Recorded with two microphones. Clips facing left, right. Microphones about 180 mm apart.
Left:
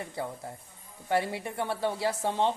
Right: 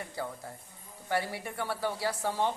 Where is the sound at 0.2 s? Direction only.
20° left (ahead or behind).